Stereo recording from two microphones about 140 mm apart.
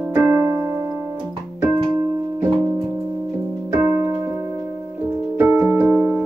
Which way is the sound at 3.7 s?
15° right (ahead or behind).